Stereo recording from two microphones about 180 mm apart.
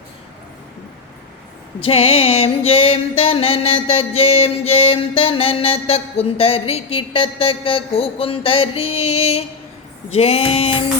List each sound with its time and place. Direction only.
1.8 s music: 30° left (ahead or behind)